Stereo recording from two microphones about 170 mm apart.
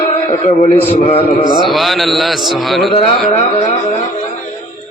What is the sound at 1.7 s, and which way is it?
A man's voice, centre (ahead or behind).